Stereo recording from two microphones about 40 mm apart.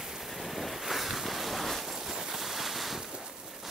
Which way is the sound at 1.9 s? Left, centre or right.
Centre.